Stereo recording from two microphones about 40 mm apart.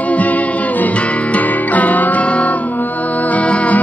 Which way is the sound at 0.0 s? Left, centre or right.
Left.